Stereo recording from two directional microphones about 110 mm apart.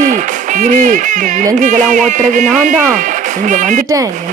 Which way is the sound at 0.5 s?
90° right.